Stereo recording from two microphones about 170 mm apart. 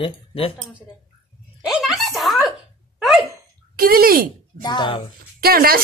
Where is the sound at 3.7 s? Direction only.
60° right (ahead or behind).